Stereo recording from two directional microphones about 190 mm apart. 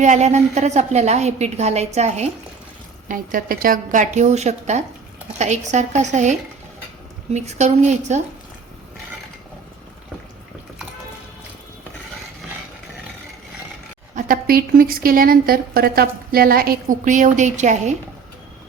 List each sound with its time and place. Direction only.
0.0 s a woman's voice: 40° right (ahead or behind)
3.1 s a woman's voice: 45° right (ahead or behind)
7.3 s a woman's voice: 35° right (ahead or behind)
14.2 s a woman's voice: 50° right (ahead or behind)